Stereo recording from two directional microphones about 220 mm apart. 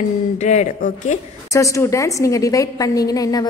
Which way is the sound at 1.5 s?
15° left (ahead or behind).